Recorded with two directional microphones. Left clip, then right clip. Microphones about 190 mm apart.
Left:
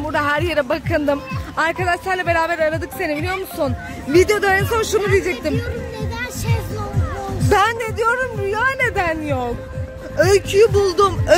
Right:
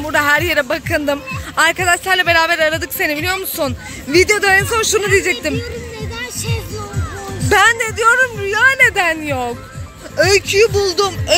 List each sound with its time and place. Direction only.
0.1 s speech: centre (ahead or behind)
7.4 s speech: centre (ahead or behind)
10.1 s speech: 10° left (ahead or behind)